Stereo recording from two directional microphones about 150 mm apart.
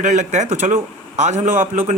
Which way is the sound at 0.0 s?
55° right (ahead or behind).